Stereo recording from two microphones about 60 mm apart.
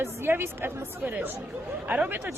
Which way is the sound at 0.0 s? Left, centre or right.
Right.